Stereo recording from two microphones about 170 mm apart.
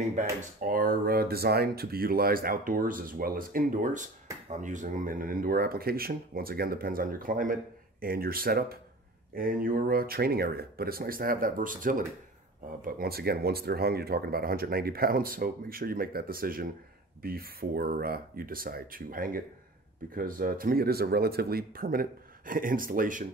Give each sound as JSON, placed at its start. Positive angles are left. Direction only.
{"t": 0.0, "sound": "speech", "side_deg": -45}